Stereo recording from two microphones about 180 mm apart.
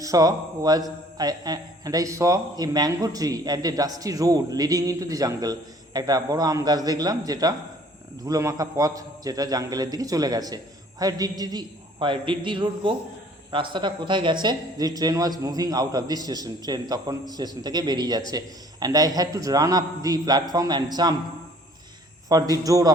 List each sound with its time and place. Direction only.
0.0 s a man's voice: 20° right (ahead or behind)
22.3 s a man's voice: 20° right (ahead or behind)